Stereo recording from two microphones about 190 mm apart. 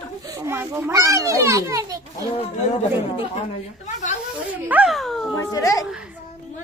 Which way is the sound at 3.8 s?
40° left (ahead or behind).